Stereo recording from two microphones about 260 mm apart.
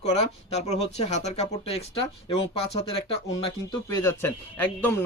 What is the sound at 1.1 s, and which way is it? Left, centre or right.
Speech, left.